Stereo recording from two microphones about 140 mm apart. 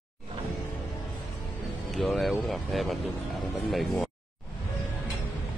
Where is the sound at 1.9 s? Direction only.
Centre (ahead or behind).